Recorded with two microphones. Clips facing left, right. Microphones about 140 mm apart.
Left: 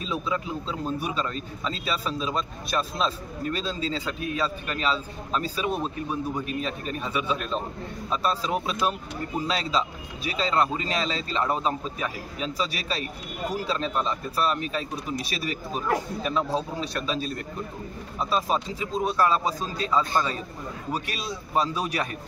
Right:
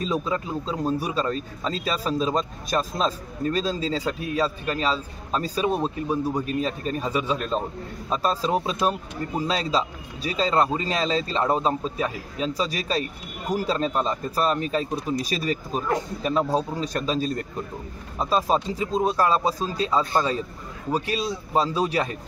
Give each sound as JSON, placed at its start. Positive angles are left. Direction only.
{"t": 0.0, "sound": "a man's voice", "side_deg": -40}